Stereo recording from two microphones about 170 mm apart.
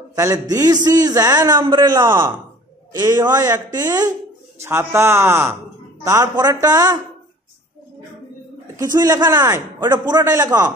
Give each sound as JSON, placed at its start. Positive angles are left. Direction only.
{"t": 0.1, "sound": "a man's voice", "side_deg": -20}
{"t": 8.7, "sound": "a man's voice", "side_deg": -20}